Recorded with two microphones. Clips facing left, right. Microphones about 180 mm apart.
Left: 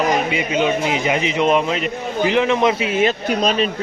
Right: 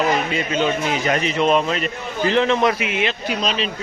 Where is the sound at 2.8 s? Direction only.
40° left (ahead or behind).